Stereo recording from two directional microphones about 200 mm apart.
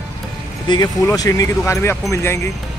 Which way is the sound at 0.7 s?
20° left (ahead or behind).